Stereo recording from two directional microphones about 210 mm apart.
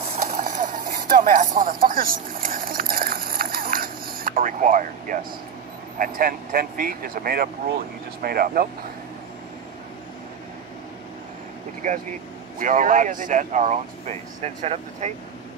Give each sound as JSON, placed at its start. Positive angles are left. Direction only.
{"t": 0.7, "sound": "vehicle", "side_deg": -40}
{"t": 5.9, "sound": "speech", "side_deg": -40}
{"t": 11.8, "sound": "speech", "side_deg": -35}